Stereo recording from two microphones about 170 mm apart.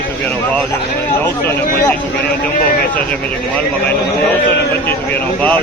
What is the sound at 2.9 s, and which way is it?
Speech, 5° left (ahead or behind).